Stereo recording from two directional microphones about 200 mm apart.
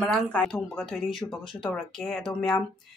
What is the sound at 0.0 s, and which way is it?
Speech, 5° left (ahead or behind).